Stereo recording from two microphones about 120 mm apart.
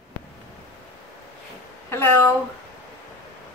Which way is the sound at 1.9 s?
15° left (ahead or behind).